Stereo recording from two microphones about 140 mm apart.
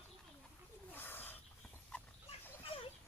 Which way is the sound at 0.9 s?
15° left (ahead or behind).